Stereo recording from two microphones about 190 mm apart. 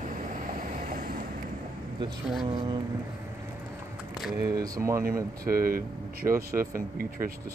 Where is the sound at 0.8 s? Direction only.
45° right (ahead or behind).